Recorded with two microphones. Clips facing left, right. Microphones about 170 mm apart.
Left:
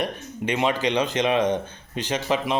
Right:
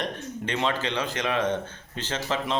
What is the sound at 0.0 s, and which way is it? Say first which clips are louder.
A man's voice: left 4 dB; 15° left (ahead or behind).